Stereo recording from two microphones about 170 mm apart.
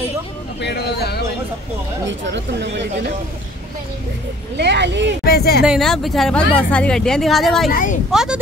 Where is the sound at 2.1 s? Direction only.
90° right.